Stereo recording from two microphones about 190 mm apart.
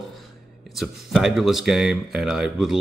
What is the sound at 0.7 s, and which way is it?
Speech, centre (ahead or behind).